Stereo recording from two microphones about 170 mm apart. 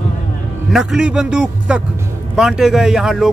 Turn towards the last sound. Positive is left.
turn(degrees=0)  # may be behind; listen again after turning